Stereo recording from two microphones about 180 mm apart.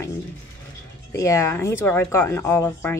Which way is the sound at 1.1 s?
15° left (ahead or behind).